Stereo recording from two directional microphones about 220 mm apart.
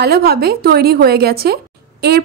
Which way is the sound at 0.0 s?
45° right (ahead or behind).